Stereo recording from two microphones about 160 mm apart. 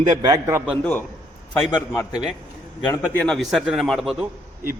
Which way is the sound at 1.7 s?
20° left (ahead or behind).